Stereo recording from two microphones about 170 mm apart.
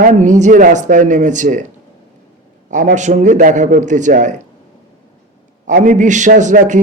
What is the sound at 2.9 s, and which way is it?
A man's voice, 45° right (ahead or behind).